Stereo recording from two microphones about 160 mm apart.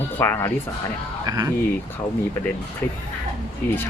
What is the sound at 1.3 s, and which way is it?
Speech, 25° right (ahead or behind).